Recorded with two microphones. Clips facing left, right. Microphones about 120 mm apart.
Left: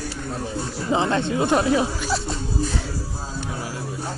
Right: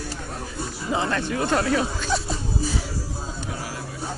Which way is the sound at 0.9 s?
25° left (ahead or behind).